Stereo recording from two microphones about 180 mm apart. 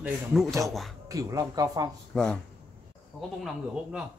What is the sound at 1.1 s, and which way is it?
Speech, 20° right (ahead or behind).